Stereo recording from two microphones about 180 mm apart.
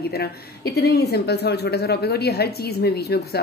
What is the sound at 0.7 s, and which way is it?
Speech, 60° left (ahead or behind).